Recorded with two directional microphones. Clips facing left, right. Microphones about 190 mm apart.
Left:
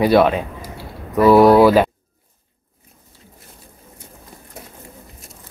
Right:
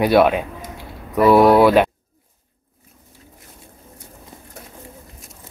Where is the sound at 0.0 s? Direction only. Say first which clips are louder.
Left 1 dB; centre (ahead or behind).